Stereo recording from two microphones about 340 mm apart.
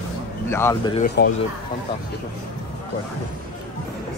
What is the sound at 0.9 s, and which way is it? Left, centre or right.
Speech, left.